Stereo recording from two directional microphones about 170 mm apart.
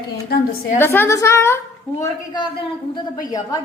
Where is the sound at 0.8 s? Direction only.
15° left (ahead or behind).